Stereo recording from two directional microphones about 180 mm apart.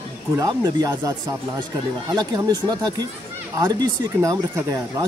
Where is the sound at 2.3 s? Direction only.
20° right (ahead or behind).